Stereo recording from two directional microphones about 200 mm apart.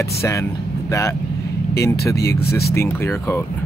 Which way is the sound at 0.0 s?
15° left (ahead or behind).